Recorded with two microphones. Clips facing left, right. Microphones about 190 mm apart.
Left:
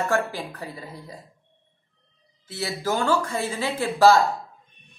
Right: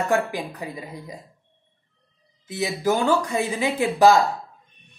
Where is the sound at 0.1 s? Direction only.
15° right (ahead or behind).